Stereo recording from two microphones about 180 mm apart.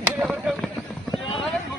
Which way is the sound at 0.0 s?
5° right (ahead or behind).